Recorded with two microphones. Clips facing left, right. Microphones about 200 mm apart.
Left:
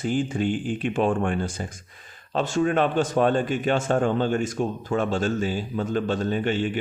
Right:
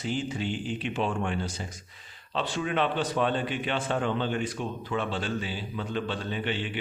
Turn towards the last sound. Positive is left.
turn(degrees=45)  # may be behind; listen again after turning